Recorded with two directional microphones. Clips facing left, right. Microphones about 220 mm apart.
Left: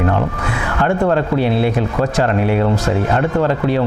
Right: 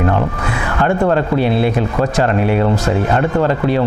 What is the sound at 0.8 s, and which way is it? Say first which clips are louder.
A man's voice: right 1 dB; 20° right (ahead or behind).